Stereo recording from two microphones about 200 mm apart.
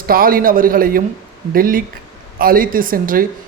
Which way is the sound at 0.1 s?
45° right (ahead or behind).